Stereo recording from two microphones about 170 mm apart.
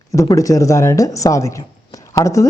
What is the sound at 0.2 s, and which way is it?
Speech, 20° left (ahead or behind).